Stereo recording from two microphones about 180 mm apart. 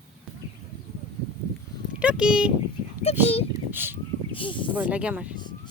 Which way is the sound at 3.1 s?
35° left (ahead or behind).